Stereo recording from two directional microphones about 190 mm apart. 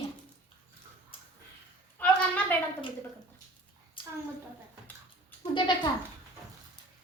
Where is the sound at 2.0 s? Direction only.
5° left (ahead or behind).